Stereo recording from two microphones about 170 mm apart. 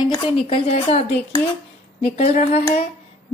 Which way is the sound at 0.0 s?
30° left (ahead or behind).